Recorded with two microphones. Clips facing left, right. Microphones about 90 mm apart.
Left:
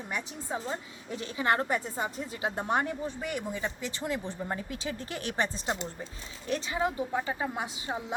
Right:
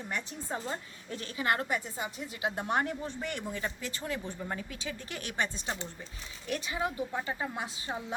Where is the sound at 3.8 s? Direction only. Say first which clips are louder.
Left 3 dB; 25° left (ahead or behind).